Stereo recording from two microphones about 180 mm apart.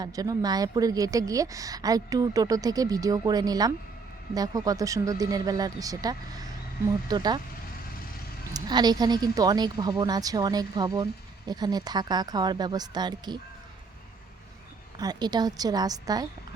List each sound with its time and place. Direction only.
0.0 s speech: 20° right (ahead or behind)
8.5 s speech: 25° right (ahead or behind)
14.9 s speech: 20° right (ahead or behind)